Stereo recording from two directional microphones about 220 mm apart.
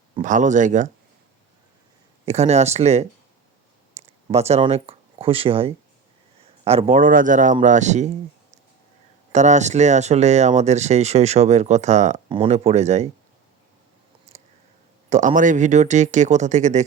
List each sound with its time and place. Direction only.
0.2 s speech: 35° right (ahead or behind)
2.2 s speech: 30° right (ahead or behind)
9.3 s speech: 30° right (ahead or behind)
15.1 s speech: 35° right (ahead or behind)